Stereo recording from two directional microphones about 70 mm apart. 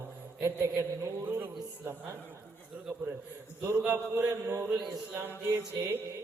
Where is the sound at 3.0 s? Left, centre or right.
Right.